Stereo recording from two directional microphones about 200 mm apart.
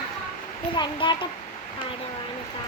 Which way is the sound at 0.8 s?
25° left (ahead or behind).